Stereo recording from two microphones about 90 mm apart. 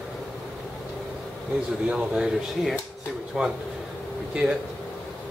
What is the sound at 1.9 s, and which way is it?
A man's voice, 10° right (ahead or behind).